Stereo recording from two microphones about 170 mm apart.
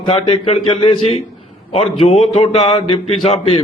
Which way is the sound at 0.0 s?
35° left (ahead or behind).